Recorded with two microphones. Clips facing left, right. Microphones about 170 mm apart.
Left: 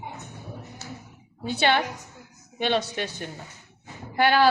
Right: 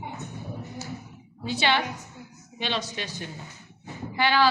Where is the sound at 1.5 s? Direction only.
50° left (ahead or behind).